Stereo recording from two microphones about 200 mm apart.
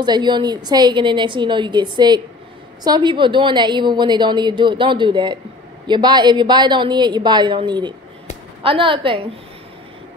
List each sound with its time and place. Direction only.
0.0 s a woman's voice: 20° right (ahead or behind)